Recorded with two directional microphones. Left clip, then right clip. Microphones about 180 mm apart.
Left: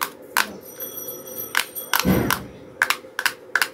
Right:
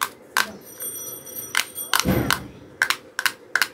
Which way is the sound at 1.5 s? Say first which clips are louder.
Even; 5° right (ahead or behind).